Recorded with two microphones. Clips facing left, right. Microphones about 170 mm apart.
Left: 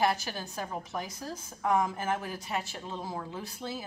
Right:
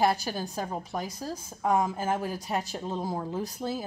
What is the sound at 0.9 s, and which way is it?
A woman's voice, 25° right (ahead or behind).